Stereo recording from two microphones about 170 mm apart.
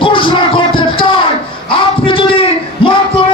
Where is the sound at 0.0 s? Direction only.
30° left (ahead or behind).